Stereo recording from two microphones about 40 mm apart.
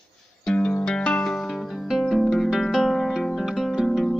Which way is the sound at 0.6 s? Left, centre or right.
Left.